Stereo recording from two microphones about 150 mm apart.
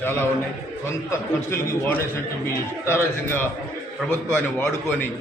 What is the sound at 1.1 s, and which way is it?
A man's voice, 15° left (ahead or behind).